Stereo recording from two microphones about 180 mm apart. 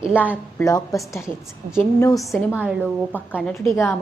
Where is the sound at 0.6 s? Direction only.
20° left (ahead or behind).